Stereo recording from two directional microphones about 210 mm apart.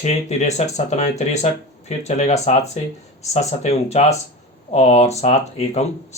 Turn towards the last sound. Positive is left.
turn(degrees=30)  # may be behind; listen again after turning